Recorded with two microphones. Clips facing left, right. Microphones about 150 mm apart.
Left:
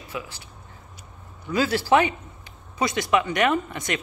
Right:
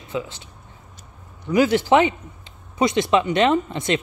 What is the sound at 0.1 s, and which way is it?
Speech, 20° right (ahead or behind).